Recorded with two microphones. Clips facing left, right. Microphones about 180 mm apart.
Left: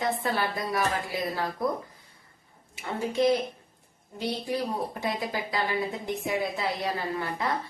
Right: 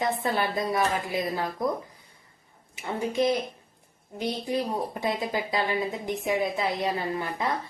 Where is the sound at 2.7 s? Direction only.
20° right (ahead or behind).